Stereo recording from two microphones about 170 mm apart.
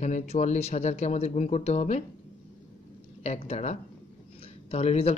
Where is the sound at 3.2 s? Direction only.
40° left (ahead or behind).